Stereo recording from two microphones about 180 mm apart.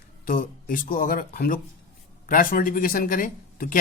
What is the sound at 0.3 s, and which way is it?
Speech, 50° left (ahead or behind).